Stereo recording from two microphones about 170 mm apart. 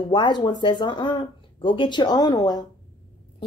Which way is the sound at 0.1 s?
30° left (ahead or behind).